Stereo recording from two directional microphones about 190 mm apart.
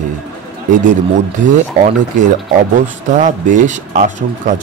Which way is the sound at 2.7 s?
40° right (ahead or behind).